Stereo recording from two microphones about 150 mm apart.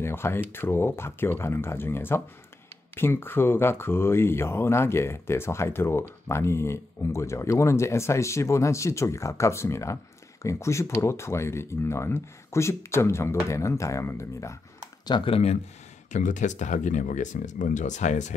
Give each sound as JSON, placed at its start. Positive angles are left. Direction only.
{"t": 0.0, "sound": "speech", "side_deg": 15}
{"t": 15.0, "sound": "speech", "side_deg": 35}
{"t": 16.1, "sound": "speech", "side_deg": 55}